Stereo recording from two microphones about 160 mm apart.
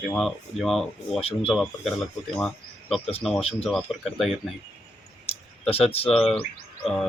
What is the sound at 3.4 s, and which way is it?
Speech, 40° left (ahead or behind).